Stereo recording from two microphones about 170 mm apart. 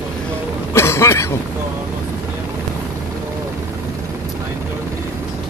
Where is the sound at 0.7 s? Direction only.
15° left (ahead or behind).